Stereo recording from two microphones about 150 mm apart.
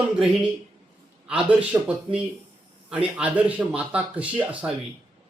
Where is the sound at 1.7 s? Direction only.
20° right (ahead or behind).